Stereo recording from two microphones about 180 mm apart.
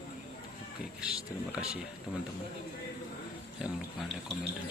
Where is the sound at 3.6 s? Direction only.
5° right (ahead or behind).